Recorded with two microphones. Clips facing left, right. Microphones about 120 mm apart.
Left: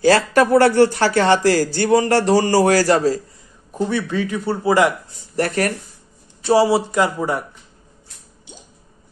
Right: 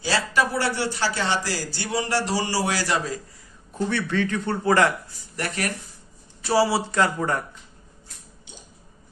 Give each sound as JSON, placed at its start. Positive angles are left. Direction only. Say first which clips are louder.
{"t": 0.0, "sound": "a man's voice", "louder": "left 9 dB", "side_deg": 55}
{"t": 3.7, "sound": "a man's voice", "louder": "left 4 dB", "side_deg": 15}
{"t": 5.3, "sound": "speech", "louder": "left 9 dB", "side_deg": 40}
{"t": 6.4, "sound": "a man's voice", "louder": "left 6 dB", "side_deg": 20}